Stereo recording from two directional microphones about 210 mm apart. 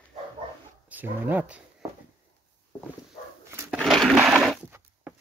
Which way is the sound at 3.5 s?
10° right (ahead or behind).